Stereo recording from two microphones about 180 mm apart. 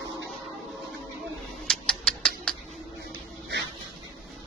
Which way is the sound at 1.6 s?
5° left (ahead or behind).